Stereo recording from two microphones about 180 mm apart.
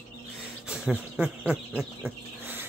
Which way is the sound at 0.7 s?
5° right (ahead or behind).